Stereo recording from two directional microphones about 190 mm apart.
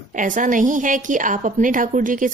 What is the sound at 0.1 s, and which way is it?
A woman's voice, 45° right (ahead or behind).